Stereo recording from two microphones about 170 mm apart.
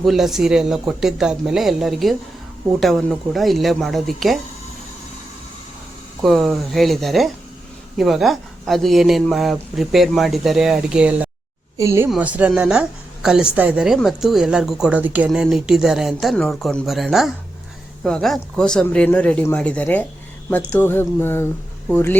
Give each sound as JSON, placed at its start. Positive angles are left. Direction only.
{"t": 0.0, "sound": "a woman's voice", "side_deg": 0}
{"t": 6.2, "sound": "a woman's voice", "side_deg": 0}
{"t": 11.8, "sound": "speech", "side_deg": -15}
{"t": 12.0, "sound": "a woman's voice", "side_deg": -5}